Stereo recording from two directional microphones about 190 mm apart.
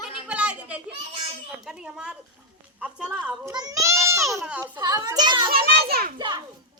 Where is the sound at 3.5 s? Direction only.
20° right (ahead or behind).